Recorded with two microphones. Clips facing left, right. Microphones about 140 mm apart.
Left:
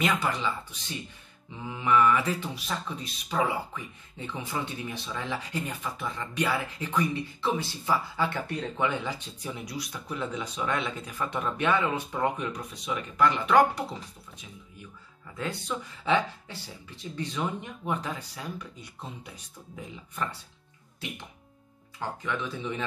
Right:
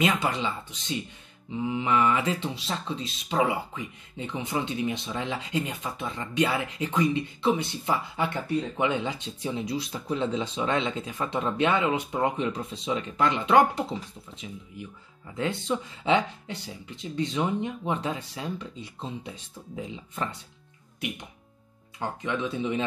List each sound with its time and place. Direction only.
0.0 s speech: 20° right (ahead or behind)
15.3 s speech: 25° right (ahead or behind)
22.0 s speech: 20° right (ahead or behind)